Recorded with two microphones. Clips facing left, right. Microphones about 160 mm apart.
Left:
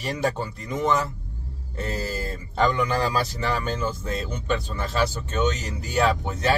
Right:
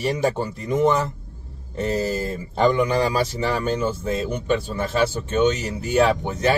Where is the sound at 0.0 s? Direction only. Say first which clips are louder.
Right 4 dB; 20° right (ahead or behind).